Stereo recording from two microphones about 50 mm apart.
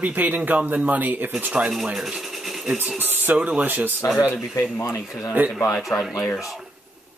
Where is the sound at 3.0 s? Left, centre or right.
Right.